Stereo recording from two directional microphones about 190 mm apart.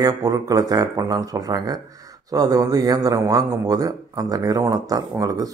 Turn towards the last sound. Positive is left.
turn(degrees=-20)  # may be behind; listen again after turning